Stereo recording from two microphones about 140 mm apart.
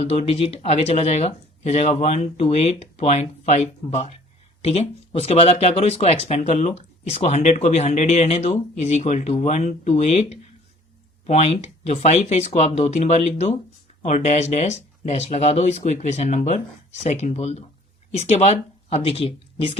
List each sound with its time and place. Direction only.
0.0 s speech: 45° left (ahead or behind)